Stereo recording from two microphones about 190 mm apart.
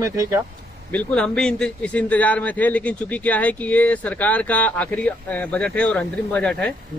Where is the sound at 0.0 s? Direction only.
15° right (ahead or behind).